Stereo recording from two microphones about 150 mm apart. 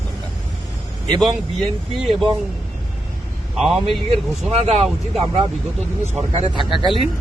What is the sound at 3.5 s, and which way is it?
Speech, centre (ahead or behind).